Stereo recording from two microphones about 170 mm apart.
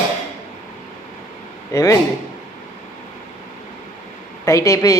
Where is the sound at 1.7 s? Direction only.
20° left (ahead or behind).